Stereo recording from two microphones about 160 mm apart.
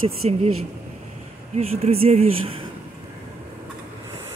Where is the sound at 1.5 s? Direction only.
40° right (ahead or behind).